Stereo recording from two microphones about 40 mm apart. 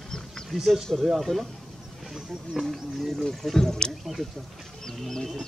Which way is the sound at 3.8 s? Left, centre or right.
Left.